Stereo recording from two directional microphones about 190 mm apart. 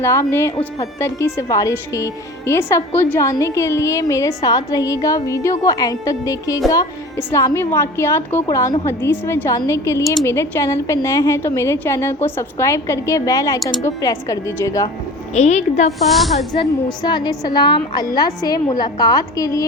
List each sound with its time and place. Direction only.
0.0 s a woman's voice: 15° left (ahead or behind)
15.4 s a woman's voice: 35° left (ahead or behind)
16.0 s speech: centre (ahead or behind)
17.0 s a woman's voice: 20° left (ahead or behind)